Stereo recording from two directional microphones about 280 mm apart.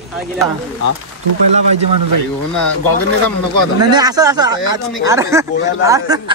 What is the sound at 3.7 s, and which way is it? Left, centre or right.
Speech, centre.